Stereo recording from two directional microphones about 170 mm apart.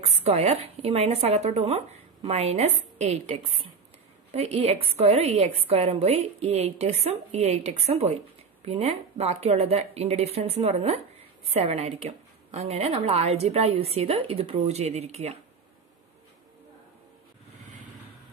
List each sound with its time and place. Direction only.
0.0 s speech: 40° right (ahead or behind)